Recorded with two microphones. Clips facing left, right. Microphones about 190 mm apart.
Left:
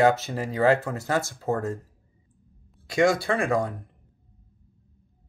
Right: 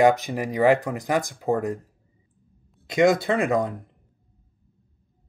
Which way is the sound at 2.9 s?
20° right (ahead or behind).